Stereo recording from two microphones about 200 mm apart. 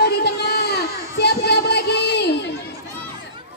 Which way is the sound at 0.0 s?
55° left (ahead or behind).